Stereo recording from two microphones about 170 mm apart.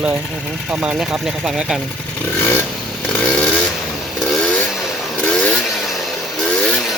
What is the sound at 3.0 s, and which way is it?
Chainsaw, 5° left (ahead or behind).